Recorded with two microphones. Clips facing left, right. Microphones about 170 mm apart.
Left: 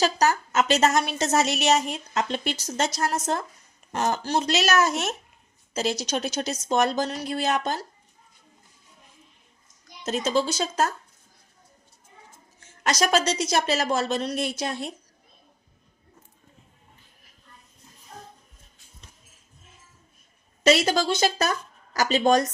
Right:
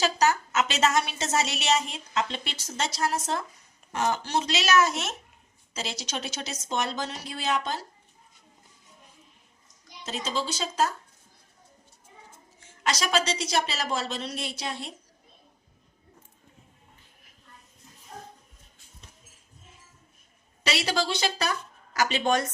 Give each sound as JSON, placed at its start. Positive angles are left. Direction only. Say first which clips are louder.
{"t": 0.0, "sound": "a woman's voice", "louder": "left 2 dB", "side_deg": 40}
{"t": 10.0, "sound": "a woman's voice", "louder": "left 7 dB", "side_deg": 45}
{"t": 12.5, "sound": "a woman's voice", "louder": "left 5 dB", "side_deg": 45}
{"t": 20.7, "sound": "a woman's voice", "louder": "left 7 dB", "side_deg": 45}